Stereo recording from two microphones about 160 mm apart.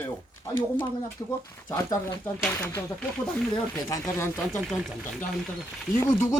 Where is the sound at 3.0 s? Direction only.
5° left (ahead or behind).